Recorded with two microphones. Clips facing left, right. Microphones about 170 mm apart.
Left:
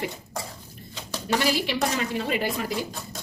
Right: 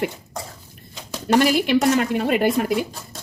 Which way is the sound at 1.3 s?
55° right (ahead or behind).